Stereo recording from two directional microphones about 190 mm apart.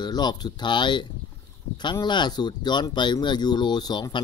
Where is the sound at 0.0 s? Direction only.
20° left (ahead or behind).